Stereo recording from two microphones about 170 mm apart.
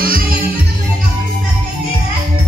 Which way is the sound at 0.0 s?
60° right (ahead or behind).